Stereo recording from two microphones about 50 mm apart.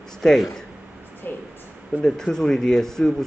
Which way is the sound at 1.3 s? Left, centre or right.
Left.